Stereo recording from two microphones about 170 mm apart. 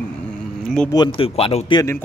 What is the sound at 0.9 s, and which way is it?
Speech, 30° left (ahead or behind).